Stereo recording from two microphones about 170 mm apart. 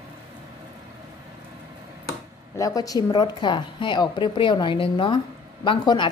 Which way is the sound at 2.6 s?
20° left (ahead or behind).